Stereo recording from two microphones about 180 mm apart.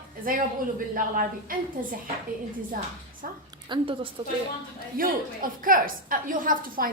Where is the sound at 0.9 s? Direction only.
50° right (ahead or behind).